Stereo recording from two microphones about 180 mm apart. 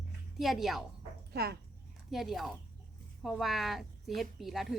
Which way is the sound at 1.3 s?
60° right (ahead or behind).